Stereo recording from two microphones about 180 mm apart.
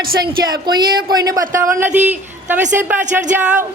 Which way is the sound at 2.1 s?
10° right (ahead or behind).